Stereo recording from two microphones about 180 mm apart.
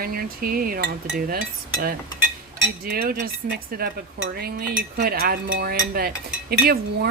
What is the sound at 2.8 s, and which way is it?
Speech, 55° right (ahead or behind).